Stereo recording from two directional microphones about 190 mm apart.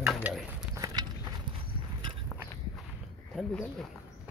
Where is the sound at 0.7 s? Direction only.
20° right (ahead or behind).